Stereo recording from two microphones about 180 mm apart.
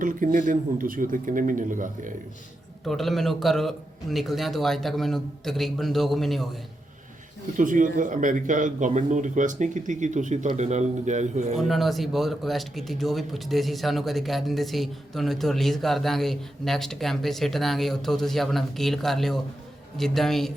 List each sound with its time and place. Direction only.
0.0 s speech: 50° right (ahead or behind)
2.8 s speech: centre (ahead or behind)
7.5 s speech: 45° right (ahead or behind)
11.5 s speech: centre (ahead or behind)